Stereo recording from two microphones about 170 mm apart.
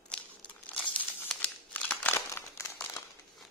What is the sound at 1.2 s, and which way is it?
Crumpling, 10° left (ahead or behind).